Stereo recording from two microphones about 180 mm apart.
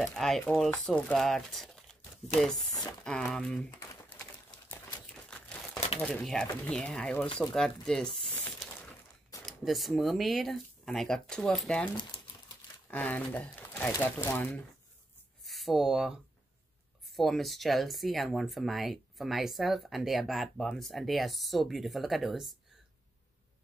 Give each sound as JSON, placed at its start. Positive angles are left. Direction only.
{"t": 0.0, "sound": "speech", "side_deg": 0}
{"t": 3.0, "sound": "speech", "side_deg": 5}
{"t": 3.9, "sound": "a sound", "side_deg": 15}
{"t": 5.0, "sound": "crumpling", "side_deg": 5}
{"t": 5.9, "sound": "speech", "side_deg": 5}
{"t": 12.9, "sound": "speech", "side_deg": 10}